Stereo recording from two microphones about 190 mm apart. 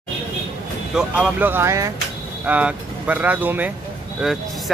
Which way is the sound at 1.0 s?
5° right (ahead or behind).